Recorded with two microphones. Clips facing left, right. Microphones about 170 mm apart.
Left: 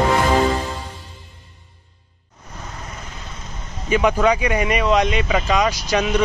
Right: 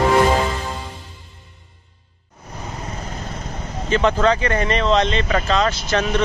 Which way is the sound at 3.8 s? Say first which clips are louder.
Even; 10° left (ahead or behind).